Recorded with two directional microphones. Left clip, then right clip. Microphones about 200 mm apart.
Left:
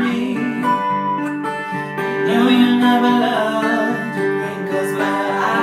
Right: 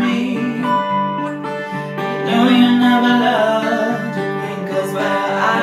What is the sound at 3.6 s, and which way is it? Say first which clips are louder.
Music: even; 50° left (ahead or behind).